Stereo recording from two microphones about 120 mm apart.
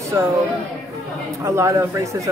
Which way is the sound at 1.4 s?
25° right (ahead or behind).